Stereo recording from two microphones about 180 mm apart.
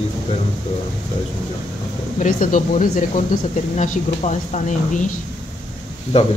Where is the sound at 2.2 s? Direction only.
50° left (ahead or behind).